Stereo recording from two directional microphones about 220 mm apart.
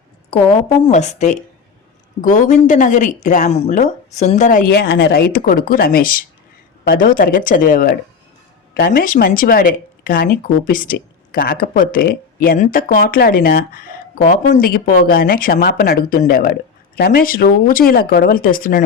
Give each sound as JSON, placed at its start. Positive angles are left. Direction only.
{"t": 0.3, "sound": "speech", "side_deg": 25}